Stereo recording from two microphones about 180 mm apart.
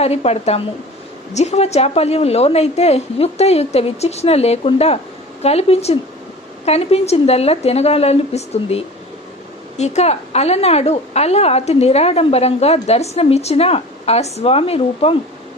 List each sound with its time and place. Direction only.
0.0 s a woman's voice: 35° left (ahead or behind)